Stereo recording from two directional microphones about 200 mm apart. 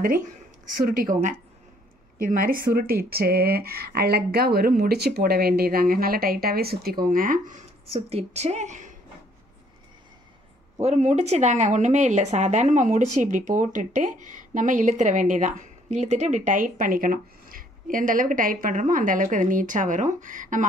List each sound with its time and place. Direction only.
0.7 s speech: 45° right (ahead or behind)
10.8 s a woman's voice: 35° right (ahead or behind)